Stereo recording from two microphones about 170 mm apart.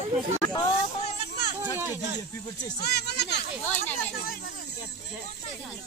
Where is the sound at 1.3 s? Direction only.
75° left (ahead or behind).